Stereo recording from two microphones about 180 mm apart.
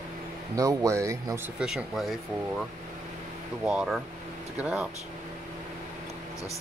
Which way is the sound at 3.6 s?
Centre (ahead or behind).